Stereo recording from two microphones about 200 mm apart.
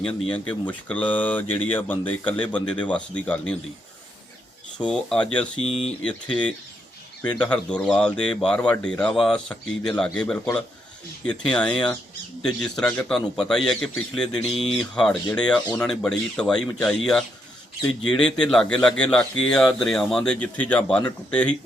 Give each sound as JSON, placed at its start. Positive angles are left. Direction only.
{"t": 0.0, "sound": "speech", "side_deg": 5}
{"t": 4.8, "sound": "speech", "side_deg": 5}